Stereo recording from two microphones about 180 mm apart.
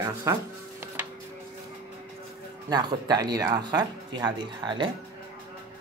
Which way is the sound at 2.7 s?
20° right (ahead or behind).